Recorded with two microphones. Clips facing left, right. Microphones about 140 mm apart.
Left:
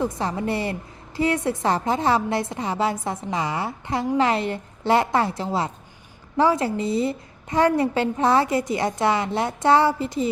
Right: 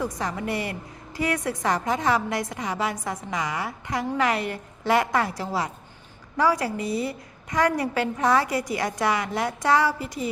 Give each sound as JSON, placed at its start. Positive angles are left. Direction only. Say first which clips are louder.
{"t": 0.0, "sound": "a woman's voice", "louder": "left 4 dB", "side_deg": 30}